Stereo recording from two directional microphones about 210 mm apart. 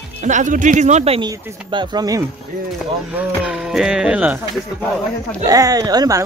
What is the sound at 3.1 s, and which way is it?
Speech, 5° right (ahead or behind).